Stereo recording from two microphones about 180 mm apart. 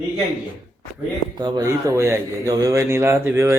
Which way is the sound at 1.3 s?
20° right (ahead or behind).